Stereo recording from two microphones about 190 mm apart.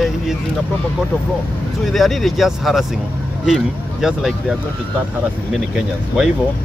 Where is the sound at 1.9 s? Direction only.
Centre (ahead or behind).